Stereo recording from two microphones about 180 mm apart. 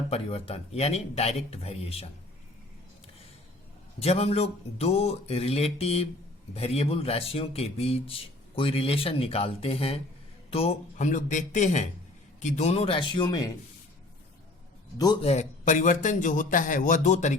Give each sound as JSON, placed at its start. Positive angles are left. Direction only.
{"t": 0.1, "sound": "speech", "side_deg": 35}
{"t": 4.0, "sound": "a man's voice", "side_deg": 35}
{"t": 14.9, "sound": "a man's voice", "side_deg": 20}
{"t": 15.2, "sound": "a man's voice", "side_deg": 40}